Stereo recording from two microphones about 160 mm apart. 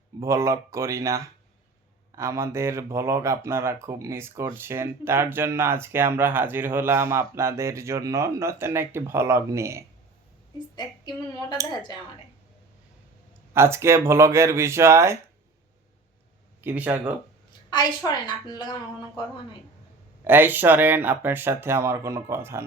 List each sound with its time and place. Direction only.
0.2 s speech: 20° right (ahead or behind)
10.8 s a woman's voice: 25° left (ahead or behind)
13.5 s speech: 15° right (ahead or behind)
16.6 s speech: 10° right (ahead or behind)
17.7 s a woman's voice: 25° left (ahead or behind)
20.2 s speech: 15° right (ahead or behind)